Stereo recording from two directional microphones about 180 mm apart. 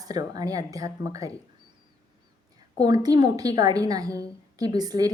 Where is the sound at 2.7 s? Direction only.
20° right (ahead or behind).